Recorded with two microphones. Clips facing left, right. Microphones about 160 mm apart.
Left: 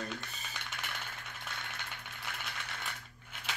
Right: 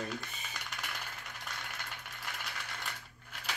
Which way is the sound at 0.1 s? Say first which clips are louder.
Right 1 dB; centre (ahead or behind).